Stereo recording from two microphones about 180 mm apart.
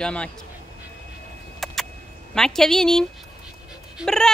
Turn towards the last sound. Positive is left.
turn(degrees=5)  # may be behind; listen again after turning